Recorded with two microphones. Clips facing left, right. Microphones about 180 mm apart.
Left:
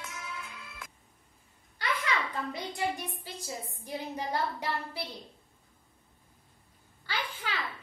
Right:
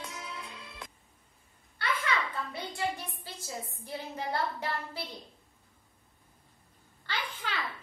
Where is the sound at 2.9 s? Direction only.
15° left (ahead or behind).